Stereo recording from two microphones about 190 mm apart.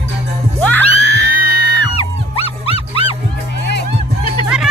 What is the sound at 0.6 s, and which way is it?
Music, 10° left (ahead or behind).